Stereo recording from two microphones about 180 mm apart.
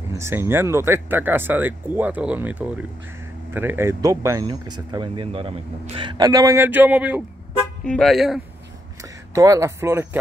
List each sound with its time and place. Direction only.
0.2 s speech: 15° right (ahead or behind)
9.3 s speech: 15° right (ahead or behind)